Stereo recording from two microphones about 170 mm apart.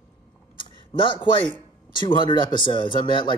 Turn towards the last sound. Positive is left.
turn(degrees=30)  # may be behind; listen again after turning